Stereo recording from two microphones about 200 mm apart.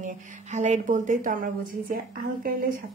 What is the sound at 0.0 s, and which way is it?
A woman's voice, 35° right (ahead or behind).